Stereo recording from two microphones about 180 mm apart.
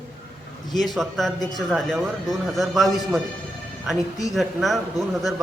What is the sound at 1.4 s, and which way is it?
Speech, 20° left (ahead or behind).